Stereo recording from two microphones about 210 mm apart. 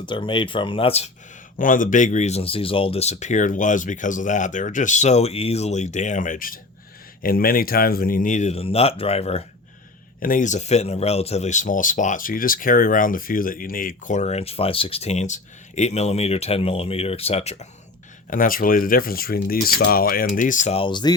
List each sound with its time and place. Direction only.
0.0 s speech: 20° left (ahead or behind)
1.5 s speech: 40° left (ahead or behind)
10.2 s speech: 40° left (ahead or behind)
18.3 s speech: 40° left (ahead or behind); by 21.2 s 20° left (ahead or behind)